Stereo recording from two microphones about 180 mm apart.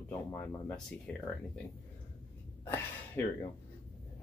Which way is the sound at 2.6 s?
10° left (ahead or behind).